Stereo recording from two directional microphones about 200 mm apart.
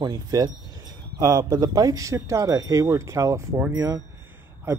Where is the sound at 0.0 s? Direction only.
20° right (ahead or behind).